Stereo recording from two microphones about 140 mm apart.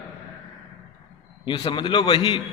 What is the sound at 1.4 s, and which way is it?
Speech, 40° left (ahead or behind).